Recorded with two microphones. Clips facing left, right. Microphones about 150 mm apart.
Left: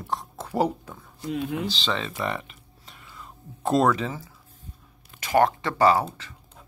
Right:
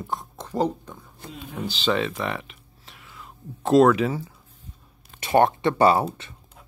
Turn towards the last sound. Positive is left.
turn(degrees=-25)  # may be behind; listen again after turning